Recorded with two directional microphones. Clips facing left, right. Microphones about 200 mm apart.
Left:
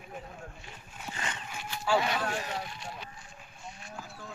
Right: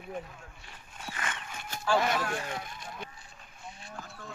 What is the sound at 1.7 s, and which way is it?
Vehicle, 45° right (ahead or behind).